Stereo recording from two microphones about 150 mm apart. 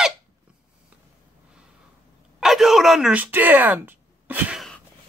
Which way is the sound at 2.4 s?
Centre (ahead or behind).